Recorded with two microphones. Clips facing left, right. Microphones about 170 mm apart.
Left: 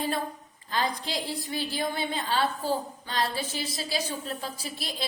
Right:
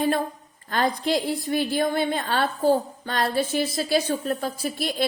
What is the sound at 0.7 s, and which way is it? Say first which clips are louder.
A woman's voice: right 7 dB; 60° right (ahead or behind).